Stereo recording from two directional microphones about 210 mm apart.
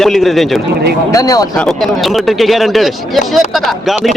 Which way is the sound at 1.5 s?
Centre (ahead or behind).